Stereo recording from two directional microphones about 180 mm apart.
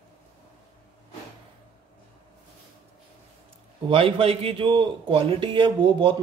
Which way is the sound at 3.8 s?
30° right (ahead or behind).